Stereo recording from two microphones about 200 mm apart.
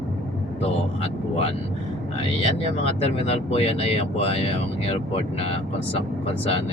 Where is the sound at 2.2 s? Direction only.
30° left (ahead or behind).